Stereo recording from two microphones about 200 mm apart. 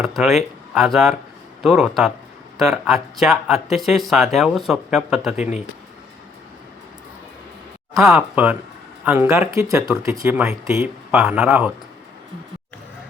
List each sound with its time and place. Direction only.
0.0 s speech: centre (ahead or behind)
5.4 s speech: 35° left (ahead or behind)
8.0 s speech: 5° right (ahead or behind)